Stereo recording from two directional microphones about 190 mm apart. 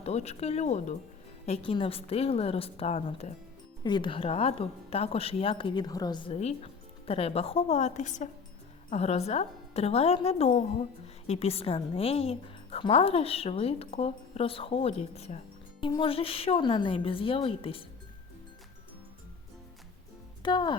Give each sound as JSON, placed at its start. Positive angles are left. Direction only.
{"t": 0.0, "sound": "a woman's voice", "side_deg": 35}
{"t": 20.4, "sound": "a woman's voice", "side_deg": 25}